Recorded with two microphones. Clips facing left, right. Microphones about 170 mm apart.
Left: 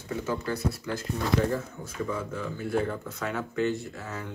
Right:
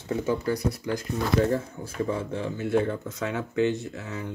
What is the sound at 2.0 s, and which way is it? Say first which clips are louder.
Speech: right 2 dB; 30° right (ahead or behind).